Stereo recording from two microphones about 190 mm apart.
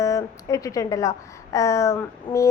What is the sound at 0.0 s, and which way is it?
A woman's voice, 15° left (ahead or behind).